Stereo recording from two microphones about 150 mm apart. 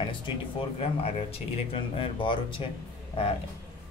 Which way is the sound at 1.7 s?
35° left (ahead or behind).